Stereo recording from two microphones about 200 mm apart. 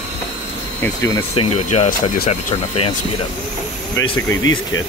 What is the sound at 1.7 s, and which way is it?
Speech, 35° left (ahead or behind).